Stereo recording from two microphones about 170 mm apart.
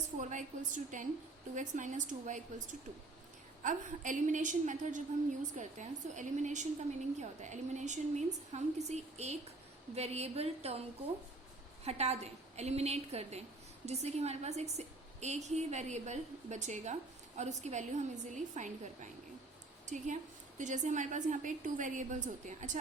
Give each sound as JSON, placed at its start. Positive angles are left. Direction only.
{"t": 0.2, "sound": "a woman's voice", "side_deg": -45}
{"t": 3.6, "sound": "a woman's voice", "side_deg": -50}
{"t": 11.9, "sound": "a woman's voice", "side_deg": -40}
{"t": 19.8, "sound": "a woman's voice", "side_deg": -45}